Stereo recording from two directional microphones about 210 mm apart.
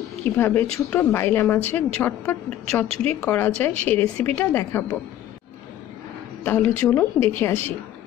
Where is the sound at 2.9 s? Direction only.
30° right (ahead or behind).